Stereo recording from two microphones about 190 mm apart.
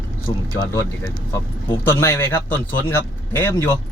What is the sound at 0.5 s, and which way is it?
Speech, 15° left (ahead or behind).